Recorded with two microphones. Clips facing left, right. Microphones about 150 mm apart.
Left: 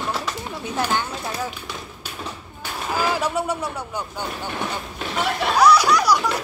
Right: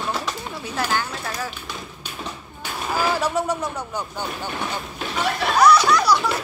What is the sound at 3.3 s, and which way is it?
Speech, 10° left (ahead or behind).